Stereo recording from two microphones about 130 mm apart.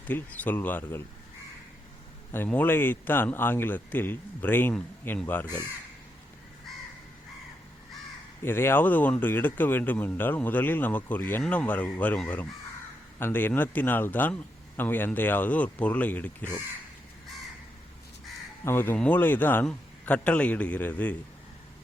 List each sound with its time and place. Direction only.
0.1 s speech: 15° left (ahead or behind)
2.3 s speech: 15° left (ahead or behind)
8.4 s speech: 15° left (ahead or behind)
18.6 s speech: 15° left (ahead or behind)